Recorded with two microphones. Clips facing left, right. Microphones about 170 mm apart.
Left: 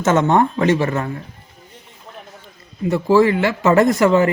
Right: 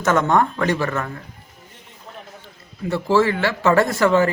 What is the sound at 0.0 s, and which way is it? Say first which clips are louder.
A man's voice: left 3 dB; 25° left (ahead or behind).